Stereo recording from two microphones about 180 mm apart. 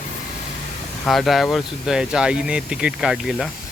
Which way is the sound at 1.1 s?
Centre (ahead or behind).